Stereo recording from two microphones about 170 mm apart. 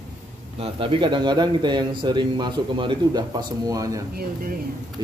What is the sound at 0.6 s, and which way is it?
A man's voice, 30° right (ahead or behind).